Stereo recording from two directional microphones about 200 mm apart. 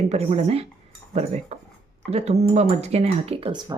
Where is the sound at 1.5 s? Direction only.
30° right (ahead or behind).